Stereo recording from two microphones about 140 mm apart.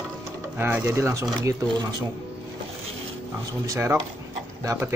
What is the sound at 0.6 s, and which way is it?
Speech, 15° right (ahead or behind).